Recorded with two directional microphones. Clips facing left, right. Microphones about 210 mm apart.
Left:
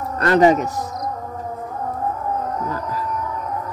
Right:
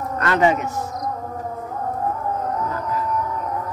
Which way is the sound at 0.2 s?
35° left (ahead or behind).